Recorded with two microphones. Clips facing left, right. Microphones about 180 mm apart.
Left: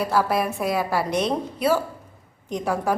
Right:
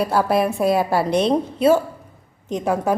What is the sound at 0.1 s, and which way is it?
A woman's voice, 25° right (ahead or behind).